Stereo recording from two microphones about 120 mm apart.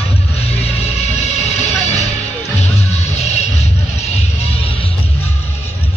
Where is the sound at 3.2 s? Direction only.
65° left (ahead or behind).